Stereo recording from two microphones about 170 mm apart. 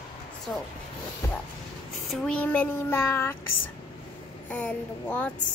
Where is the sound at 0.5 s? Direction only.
10° left (ahead or behind).